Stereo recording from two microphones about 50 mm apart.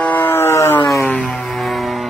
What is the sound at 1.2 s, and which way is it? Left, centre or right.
Music, centre.